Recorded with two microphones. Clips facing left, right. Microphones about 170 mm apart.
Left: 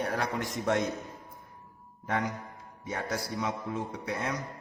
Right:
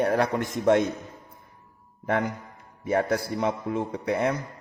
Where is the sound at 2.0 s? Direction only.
60° right (ahead or behind).